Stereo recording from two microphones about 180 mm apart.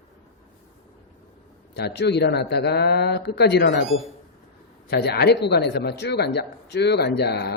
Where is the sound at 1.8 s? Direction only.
70° left (ahead or behind).